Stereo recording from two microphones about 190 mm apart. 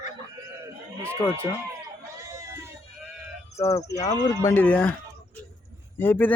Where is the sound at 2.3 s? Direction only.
15° right (ahead or behind).